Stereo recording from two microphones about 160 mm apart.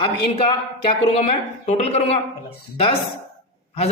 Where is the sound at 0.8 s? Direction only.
40° left (ahead or behind).